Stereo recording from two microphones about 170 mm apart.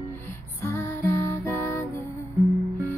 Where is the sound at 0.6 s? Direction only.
15° left (ahead or behind).